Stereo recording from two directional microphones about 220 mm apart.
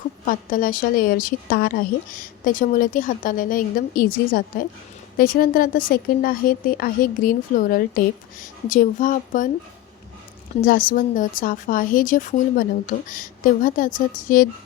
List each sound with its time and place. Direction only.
0.3 s a woman's voice: 40° left (ahead or behind)
10.6 s a woman's voice: 40° left (ahead or behind)